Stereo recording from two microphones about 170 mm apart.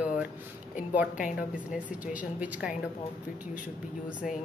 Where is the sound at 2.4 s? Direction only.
5° right (ahead or behind).